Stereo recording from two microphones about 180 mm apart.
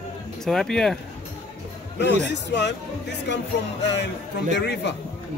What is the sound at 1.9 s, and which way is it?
Speech, 75° left (ahead or behind).